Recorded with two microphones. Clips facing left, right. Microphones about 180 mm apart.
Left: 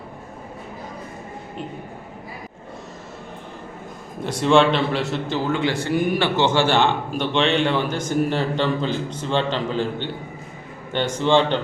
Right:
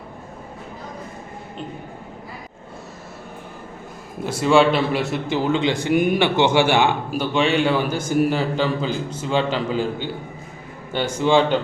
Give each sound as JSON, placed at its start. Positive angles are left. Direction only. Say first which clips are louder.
{"t": 4.2, "sound": "a man's voice", "louder": "right 1 dB", "side_deg": -5}